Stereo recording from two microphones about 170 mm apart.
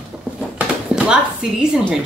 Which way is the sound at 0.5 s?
5° right (ahead or behind).